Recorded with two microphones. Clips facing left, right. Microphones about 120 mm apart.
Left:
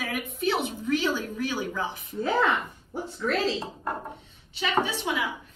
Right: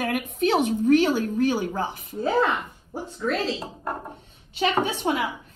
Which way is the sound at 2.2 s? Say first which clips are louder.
Right 2 dB; 30° right (ahead or behind).